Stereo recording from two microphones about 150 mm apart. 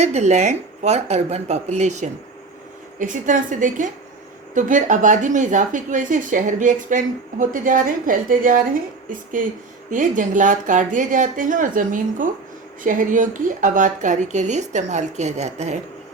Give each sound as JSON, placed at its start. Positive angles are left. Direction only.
{"t": 0.0, "sound": "a woman's voice", "side_deg": -50}
{"t": 3.0, "sound": "a woman's voice", "side_deg": -60}